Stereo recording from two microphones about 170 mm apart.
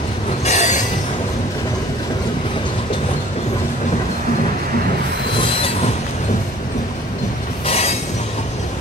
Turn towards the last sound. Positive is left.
turn(degrees=35)  # may be behind; listen again after turning